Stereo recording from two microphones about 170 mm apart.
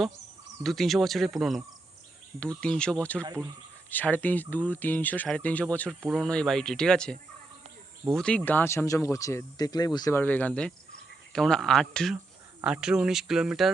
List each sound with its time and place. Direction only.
0.6 s speech: centre (ahead or behind)
6.0 s speech: centre (ahead or behind); by 10.2 s 25° left (ahead or behind)
10.2 s speech: 10° left (ahead or behind)